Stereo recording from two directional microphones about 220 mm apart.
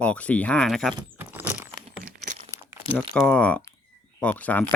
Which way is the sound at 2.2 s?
35° right (ahead or behind).